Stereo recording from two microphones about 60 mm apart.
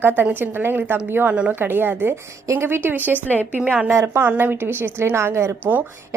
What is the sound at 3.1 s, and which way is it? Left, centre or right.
Speech, left.